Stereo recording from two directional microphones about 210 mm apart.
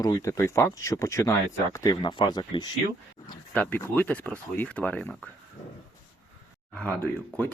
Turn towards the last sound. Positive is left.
turn(degrees=5)  # may be behind; listen again after turning